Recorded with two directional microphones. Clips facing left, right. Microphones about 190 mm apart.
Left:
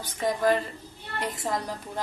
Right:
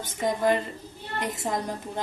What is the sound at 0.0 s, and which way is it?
A woman's voice, 25° right (ahead or behind).